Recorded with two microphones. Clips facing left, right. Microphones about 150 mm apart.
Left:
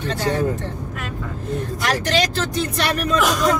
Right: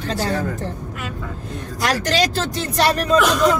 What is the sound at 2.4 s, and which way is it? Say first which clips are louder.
Speech: right 2 dB; 35° right (ahead or behind).